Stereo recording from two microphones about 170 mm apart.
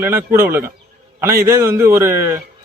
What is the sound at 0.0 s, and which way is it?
A man's voice, 15° right (ahead or behind).